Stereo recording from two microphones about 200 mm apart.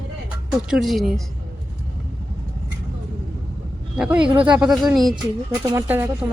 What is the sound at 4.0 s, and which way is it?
Speech, 5° right (ahead or behind).